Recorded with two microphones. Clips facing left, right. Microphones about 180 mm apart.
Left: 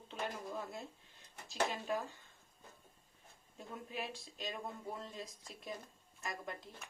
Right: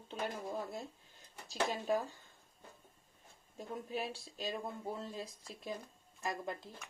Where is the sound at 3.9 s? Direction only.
35° right (ahead or behind).